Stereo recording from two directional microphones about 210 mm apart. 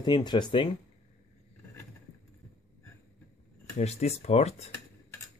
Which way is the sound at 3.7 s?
30° left (ahead or behind).